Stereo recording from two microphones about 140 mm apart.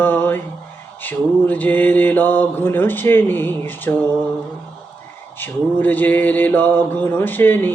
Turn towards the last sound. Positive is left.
turn(degrees=15)  # may be behind; listen again after turning